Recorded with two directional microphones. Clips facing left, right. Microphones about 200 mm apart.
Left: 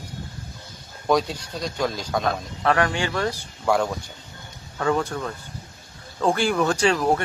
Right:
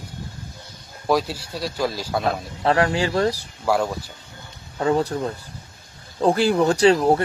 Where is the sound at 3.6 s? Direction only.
5° right (ahead or behind).